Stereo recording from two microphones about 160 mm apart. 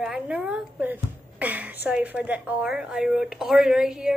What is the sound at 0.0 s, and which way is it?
A woman's voice, 5° right (ahead or behind).